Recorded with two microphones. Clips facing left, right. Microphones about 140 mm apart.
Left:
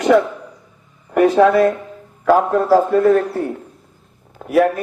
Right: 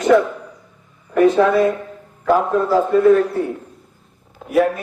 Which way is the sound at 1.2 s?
60° left (ahead or behind).